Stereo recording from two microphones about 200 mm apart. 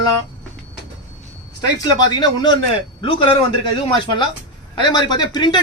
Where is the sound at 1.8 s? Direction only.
20° left (ahead or behind).